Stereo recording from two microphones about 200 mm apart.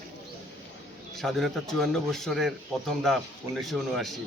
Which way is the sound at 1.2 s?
Centre (ahead or behind).